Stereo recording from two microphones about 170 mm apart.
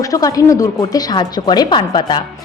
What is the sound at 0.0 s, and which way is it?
A woman's voice, 20° left (ahead or behind).